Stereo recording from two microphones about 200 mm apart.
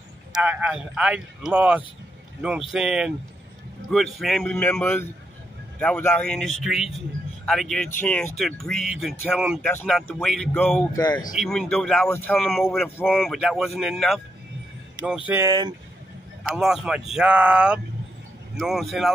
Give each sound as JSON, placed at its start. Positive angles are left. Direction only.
{"t": 0.3, "sound": "a man's voice", "side_deg": -10}
{"t": 9.7, "sound": "a man's voice", "side_deg": 10}
{"t": 11.0, "sound": "speech", "side_deg": 20}
{"t": 11.3, "sound": "speech", "side_deg": 5}
{"t": 16.4, "sound": "speech", "side_deg": 0}